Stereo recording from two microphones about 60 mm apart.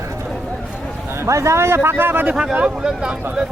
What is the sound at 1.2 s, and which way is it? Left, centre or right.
A man's voice, right.